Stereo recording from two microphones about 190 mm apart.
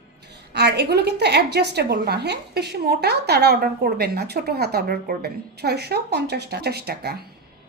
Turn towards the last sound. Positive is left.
turn(degrees=-55)  # may be behind; listen again after turning